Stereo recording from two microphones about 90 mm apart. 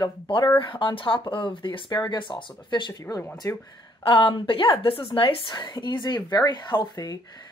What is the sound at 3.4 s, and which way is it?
Speech, 30° left (ahead or behind).